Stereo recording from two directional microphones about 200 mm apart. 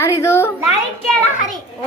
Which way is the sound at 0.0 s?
15° left (ahead or behind).